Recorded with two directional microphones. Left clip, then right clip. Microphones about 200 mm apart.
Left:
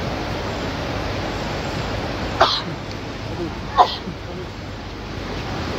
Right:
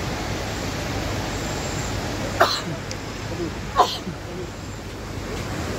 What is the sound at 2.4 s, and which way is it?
Cough, 55° right (ahead or behind).